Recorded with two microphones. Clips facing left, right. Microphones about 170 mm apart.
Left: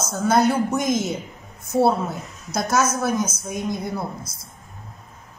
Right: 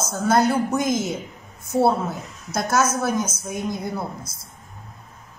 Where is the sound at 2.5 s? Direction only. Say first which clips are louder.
Even; centre (ahead or behind).